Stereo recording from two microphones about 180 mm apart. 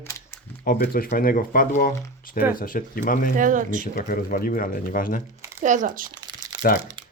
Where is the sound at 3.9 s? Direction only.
50° left (ahead or behind).